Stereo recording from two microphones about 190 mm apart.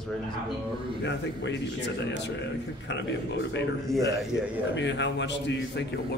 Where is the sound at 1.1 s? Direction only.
65° left (ahead or behind).